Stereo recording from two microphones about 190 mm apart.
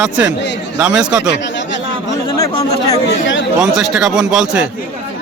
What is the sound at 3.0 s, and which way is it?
Speech, 80° left.